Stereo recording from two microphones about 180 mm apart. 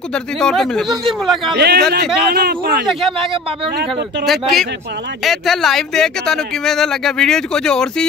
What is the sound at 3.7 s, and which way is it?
Speech, 70° right (ahead or behind).